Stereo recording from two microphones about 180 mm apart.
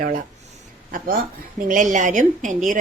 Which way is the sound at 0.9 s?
50° right (ahead or behind).